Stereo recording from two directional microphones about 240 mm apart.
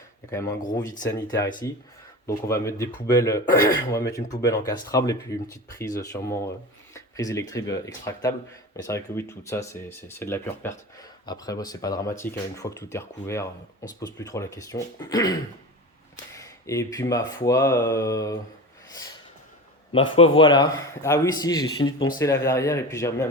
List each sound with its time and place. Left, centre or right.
0.3 s speech: centre
19.9 s speech: left